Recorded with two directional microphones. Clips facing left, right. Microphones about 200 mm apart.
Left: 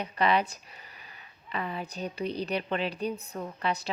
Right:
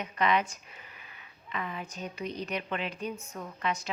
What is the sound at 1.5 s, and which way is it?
A woman's voice, 35° left (ahead or behind).